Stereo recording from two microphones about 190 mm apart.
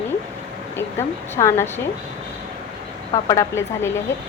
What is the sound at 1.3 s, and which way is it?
Speech, 15° left (ahead or behind).